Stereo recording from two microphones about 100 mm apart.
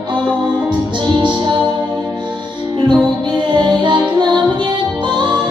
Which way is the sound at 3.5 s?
50° right (ahead or behind).